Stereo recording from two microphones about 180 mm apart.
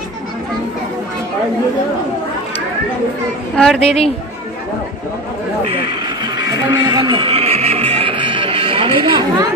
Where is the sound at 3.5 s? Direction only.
Centre (ahead or behind).